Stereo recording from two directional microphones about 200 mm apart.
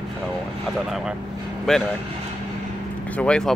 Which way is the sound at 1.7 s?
Centre (ahead or behind).